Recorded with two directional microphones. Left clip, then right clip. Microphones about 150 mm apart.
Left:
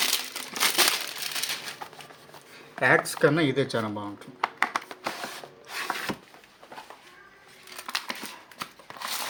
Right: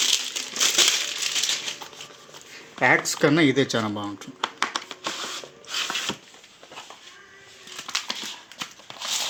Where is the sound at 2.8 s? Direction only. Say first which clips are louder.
Right 2 dB; 50° right (ahead or behind).